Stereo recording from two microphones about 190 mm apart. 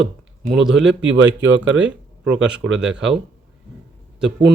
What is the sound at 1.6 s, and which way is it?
Speech, 85° right.